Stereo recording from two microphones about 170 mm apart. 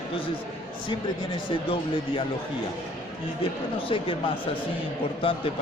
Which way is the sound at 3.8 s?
30° left (ahead or behind).